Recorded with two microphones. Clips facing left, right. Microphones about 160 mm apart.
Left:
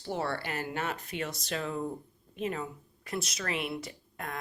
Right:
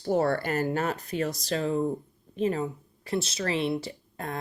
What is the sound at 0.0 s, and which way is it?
Speech, 45° right (ahead or behind).